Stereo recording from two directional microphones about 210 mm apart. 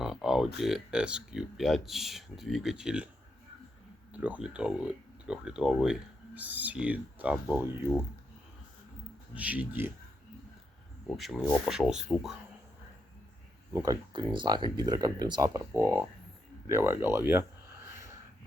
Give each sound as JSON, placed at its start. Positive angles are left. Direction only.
{"t": 0.0, "sound": "speech", "side_deg": 0}
{"t": 4.1, "sound": "speech", "side_deg": -5}
{"t": 9.3, "sound": "speech", "side_deg": -5}
{"t": 11.2, "sound": "speech", "side_deg": 5}
{"t": 13.7, "sound": "speech", "side_deg": -15}
{"t": 17.8, "sound": "a sound", "side_deg": -15}